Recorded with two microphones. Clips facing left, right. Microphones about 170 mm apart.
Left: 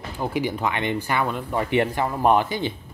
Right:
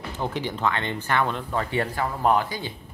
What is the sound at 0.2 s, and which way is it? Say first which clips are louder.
Speech: left 2 dB; 10° left (ahead or behind).